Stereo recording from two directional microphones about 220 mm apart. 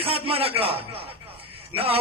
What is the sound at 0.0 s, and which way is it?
A man's voice, 25° right (ahead or behind).